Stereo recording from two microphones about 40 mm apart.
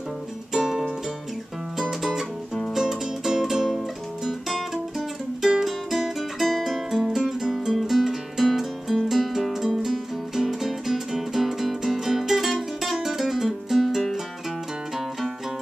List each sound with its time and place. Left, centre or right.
0.5 s music: centre
7.0 s music: centre